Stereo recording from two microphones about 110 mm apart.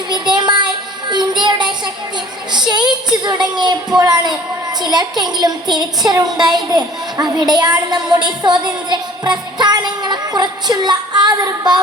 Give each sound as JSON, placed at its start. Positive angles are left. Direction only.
{"t": 0.3, "sound": "child singing", "side_deg": -40}
{"t": 2.5, "sound": "a child's voice", "side_deg": -40}